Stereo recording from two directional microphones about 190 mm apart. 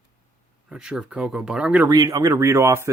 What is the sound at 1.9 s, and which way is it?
Speech, 20° right (ahead or behind).